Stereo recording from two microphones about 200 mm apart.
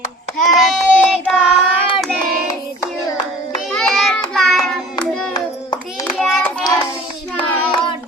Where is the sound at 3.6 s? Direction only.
Centre (ahead or behind).